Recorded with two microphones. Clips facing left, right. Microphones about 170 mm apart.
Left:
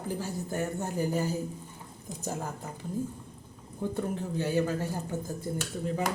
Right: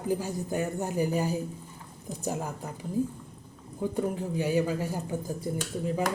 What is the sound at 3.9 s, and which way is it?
Speech, 10° right (ahead or behind).